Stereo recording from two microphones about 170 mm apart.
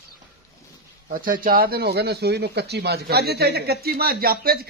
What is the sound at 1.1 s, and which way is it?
Speech, 55° right (ahead or behind).